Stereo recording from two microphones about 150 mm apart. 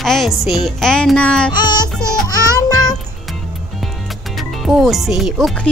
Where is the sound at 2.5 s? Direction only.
25° left (ahead or behind).